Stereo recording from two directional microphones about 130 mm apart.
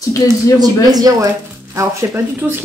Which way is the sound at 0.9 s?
30° right (ahead or behind).